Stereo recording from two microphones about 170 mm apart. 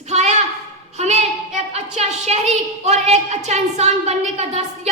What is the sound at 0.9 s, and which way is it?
Child singing, 40° right (ahead or behind).